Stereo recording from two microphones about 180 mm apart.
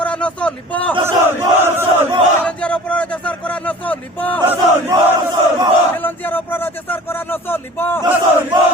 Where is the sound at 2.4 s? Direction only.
5° left (ahead or behind).